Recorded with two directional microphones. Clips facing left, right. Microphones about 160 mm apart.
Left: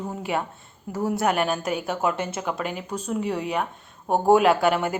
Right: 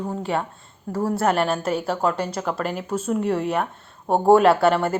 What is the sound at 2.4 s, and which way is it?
Speech, 5° left (ahead or behind).